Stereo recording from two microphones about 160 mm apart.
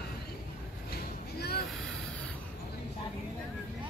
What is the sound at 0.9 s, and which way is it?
Vehicle, 80° left.